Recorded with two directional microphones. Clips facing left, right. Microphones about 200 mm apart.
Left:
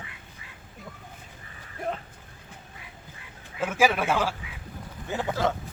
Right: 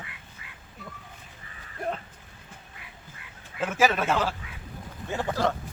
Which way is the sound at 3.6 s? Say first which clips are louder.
Left 1 dB; 10° left (ahead or behind).